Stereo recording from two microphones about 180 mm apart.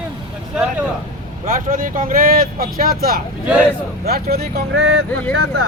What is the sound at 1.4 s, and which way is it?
Speech, 50° right (ahead or behind).